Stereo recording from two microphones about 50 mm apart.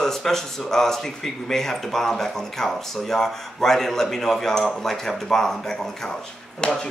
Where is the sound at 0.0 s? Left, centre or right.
Centre.